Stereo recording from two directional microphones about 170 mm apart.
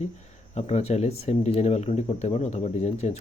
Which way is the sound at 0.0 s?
40° left (ahead or behind).